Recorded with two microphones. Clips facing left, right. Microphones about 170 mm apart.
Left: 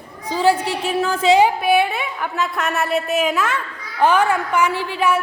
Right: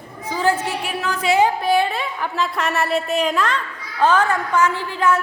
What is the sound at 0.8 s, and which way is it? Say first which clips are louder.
A woman's voice: left 6 dB; 25° left (ahead or behind).